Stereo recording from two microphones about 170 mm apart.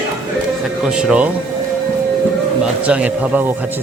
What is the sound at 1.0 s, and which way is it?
Speech, 5° right (ahead or behind).